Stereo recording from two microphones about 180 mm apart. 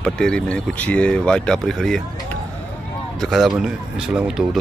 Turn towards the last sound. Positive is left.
turn(degrees=-5)  # may be behind; listen again after turning